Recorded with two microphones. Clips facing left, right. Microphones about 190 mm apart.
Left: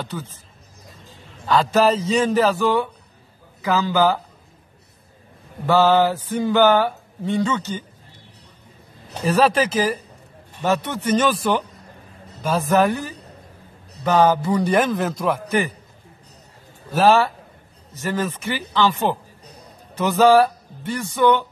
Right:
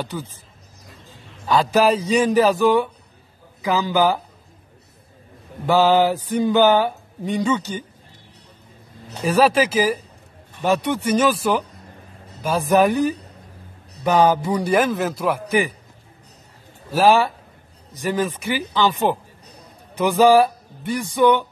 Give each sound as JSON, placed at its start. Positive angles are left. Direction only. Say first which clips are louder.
{"t": 0.0, "sound": "mantra", "louder": "right 2 dB", "side_deg": -10}
{"t": 1.4, "sound": "mantra", "louder": "even", "side_deg": -10}
{"t": 5.7, "sound": "mantra", "louder": "even", "side_deg": -15}
{"t": 9.2, "sound": "mantra", "louder": "right 1 dB", "side_deg": -10}
{"t": 16.9, "sound": "mantra", "louder": "even", "side_deg": -10}
{"t": 20.0, "sound": "speech", "louder": "even", "side_deg": -15}